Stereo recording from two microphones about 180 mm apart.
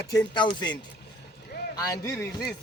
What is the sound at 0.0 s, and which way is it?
Speech, 15° left (ahead or behind).